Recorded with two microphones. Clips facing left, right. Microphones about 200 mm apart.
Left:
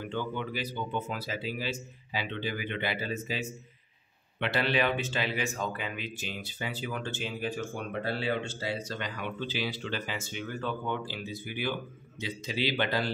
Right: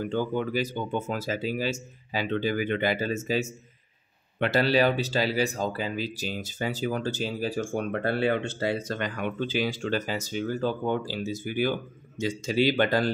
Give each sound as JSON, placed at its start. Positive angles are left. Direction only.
{"t": 0.0, "sound": "speech", "side_deg": -40}